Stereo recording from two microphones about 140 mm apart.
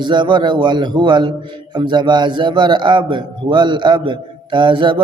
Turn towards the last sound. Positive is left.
turn(degrees=-35)  # may be behind; listen again after turning